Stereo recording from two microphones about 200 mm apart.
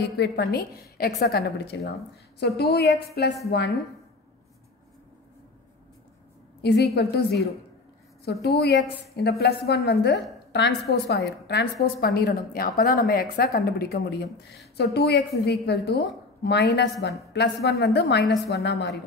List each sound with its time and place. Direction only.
0.0 s a woman's voice: 55° left (ahead or behind)
6.6 s a woman's voice: 55° left (ahead or behind)